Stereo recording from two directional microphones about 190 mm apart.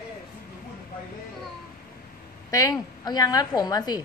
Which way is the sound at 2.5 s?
20° left (ahead or behind).